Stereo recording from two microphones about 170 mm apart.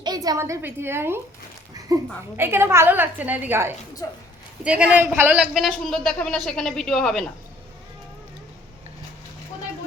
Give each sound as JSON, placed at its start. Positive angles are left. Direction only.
{"t": 0.0, "sound": "a woman's voice", "side_deg": -20}
{"t": 4.0, "sound": "speech", "side_deg": 20}
{"t": 4.6, "sound": "a woman's voice", "side_deg": -5}